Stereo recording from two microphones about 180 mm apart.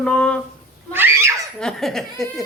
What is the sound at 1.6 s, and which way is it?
Speech, centre (ahead or behind).